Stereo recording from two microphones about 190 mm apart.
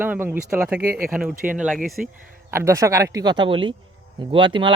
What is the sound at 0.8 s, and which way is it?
Speech, 55° right (ahead or behind).